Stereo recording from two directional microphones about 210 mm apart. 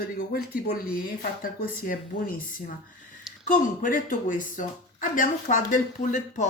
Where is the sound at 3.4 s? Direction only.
40° left (ahead or behind).